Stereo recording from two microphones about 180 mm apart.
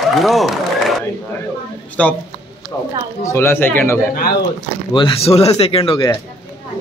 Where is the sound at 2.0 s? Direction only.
5° left (ahead or behind).